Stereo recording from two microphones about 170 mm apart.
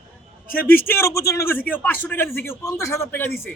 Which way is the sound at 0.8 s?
15° left (ahead or behind).